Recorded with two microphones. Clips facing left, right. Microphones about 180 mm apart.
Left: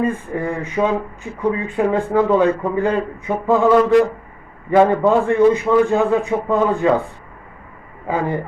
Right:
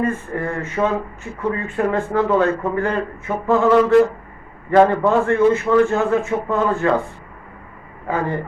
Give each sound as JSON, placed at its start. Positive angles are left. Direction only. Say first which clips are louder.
{"t": 0.0, "sound": "speech", "louder": "left 1 dB", "side_deg": 15}
{"t": 8.0, "sound": "speech", "louder": "left 1 dB", "side_deg": 15}